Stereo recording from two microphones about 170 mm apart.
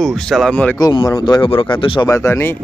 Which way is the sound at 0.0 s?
5° left (ahead or behind).